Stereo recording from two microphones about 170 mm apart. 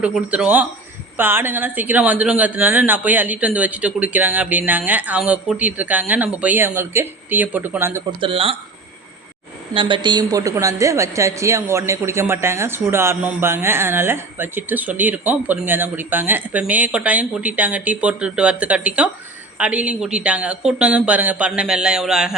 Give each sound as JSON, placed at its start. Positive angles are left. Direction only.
{"t": 0.0, "sound": "a woman's voice", "side_deg": -10}
{"t": 8.2, "sound": "speech", "side_deg": -30}
{"t": 9.7, "sound": "a woman's voice", "side_deg": -30}